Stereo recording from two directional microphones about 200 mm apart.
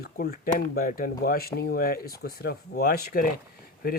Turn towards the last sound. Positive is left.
turn(degrees=50)  # may be behind; listen again after turning